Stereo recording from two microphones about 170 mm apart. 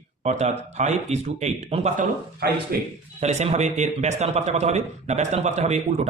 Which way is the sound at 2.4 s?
65° right (ahead or behind).